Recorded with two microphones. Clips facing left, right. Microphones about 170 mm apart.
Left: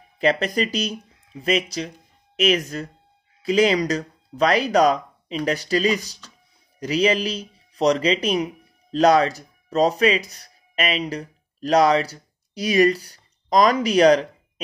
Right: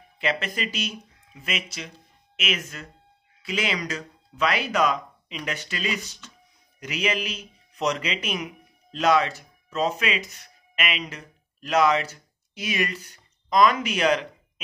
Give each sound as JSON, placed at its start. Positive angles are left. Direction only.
{"t": 0.2, "sound": "speech", "side_deg": 35}